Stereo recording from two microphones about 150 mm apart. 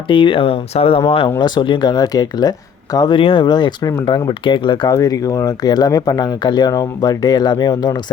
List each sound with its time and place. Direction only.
0.1 s speech: 35° left (ahead or behind)
1.4 s speech: 30° left (ahead or behind)